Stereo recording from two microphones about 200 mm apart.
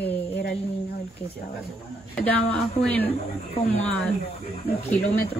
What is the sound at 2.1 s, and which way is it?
Speech, 5° left (ahead or behind).